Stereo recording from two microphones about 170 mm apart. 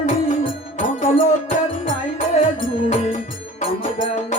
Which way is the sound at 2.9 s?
50° left (ahead or behind).